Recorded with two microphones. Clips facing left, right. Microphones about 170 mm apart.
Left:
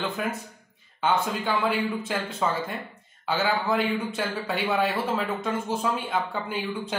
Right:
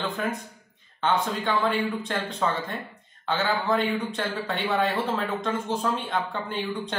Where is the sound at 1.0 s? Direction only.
5° left (ahead or behind).